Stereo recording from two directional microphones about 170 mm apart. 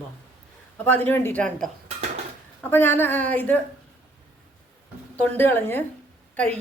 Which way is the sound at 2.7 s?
10° left (ahead or behind).